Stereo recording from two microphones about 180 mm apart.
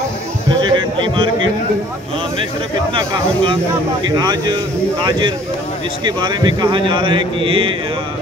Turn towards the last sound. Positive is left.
turn(degrees=-30)  # may be behind; listen again after turning